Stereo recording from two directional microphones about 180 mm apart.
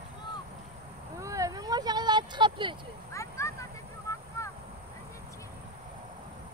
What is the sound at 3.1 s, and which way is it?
Vehicle, 15° left (ahead or behind).